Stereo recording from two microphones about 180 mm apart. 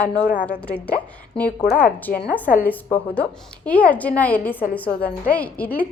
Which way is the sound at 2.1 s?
55° left (ahead or behind).